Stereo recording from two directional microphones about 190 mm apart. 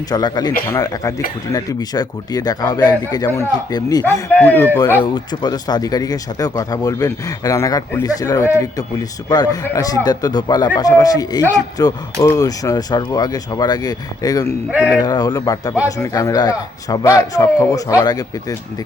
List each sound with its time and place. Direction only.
0.1 s speech: 20° left (ahead or behind)
4.4 s speech: 10° left (ahead or behind)
5.1 s speech: 20° left (ahead or behind)